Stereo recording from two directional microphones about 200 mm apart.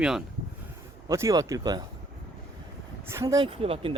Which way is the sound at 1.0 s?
15° right (ahead or behind).